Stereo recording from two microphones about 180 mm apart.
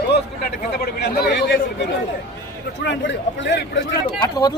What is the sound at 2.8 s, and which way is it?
Speech, 80° left.